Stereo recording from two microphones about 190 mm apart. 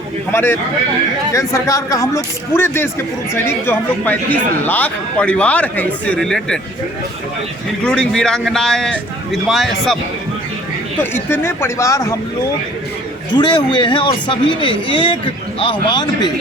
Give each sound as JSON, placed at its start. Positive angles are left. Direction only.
{"t": 0.3, "sound": "speech", "side_deg": 10}
{"t": 7.9, "sound": "a man's voice", "side_deg": 5}
{"t": 11.0, "sound": "speech", "side_deg": 10}
{"t": 13.3, "sound": "speech", "side_deg": 25}